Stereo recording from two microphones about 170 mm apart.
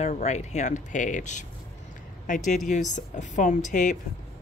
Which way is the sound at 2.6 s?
45° left (ahead or behind).